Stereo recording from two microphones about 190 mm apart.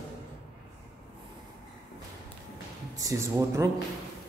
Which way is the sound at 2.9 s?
20° right (ahead or behind).